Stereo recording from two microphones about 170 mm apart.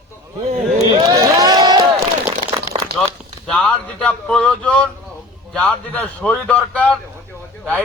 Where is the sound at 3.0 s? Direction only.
5° left (ahead or behind).